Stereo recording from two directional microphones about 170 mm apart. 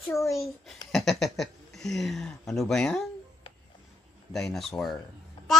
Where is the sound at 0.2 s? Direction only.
Centre (ahead or behind).